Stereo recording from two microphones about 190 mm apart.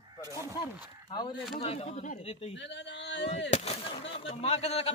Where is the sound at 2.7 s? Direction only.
65° left (ahead or behind).